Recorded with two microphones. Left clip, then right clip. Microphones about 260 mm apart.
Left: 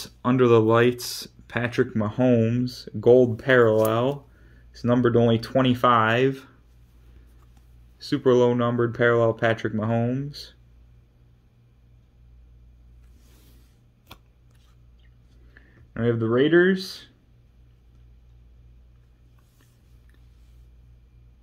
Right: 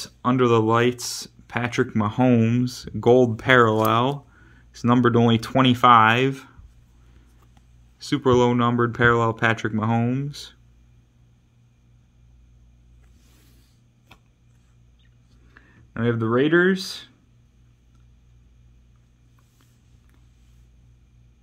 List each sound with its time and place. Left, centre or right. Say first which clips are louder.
0.0 s speech: even; centre
8.0 s speech: even; right
14.1 s a sound: left 4 dB; left
15.5 s speech: right 2 dB; centre